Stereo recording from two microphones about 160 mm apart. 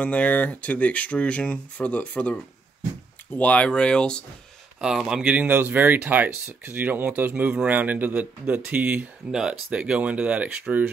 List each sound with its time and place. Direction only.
0.0 s speech: 10° left (ahead or behind)
3.3 s speech: 10° left (ahead or behind); by 10.9 s 10° right (ahead or behind)